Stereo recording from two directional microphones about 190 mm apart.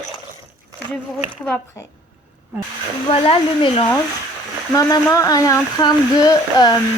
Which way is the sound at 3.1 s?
30° left (ahead or behind).